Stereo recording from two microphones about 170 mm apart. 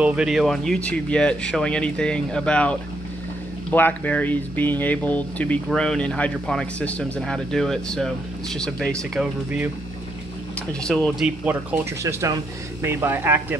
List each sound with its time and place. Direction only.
0.0 s speech: 5° right (ahead or behind)
3.7 s speech: 10° left (ahead or behind); by 9.7 s 5° right (ahead or behind)
10.7 s speech: 5° left (ahead or behind)
11.8 s speech: 15° right (ahead or behind)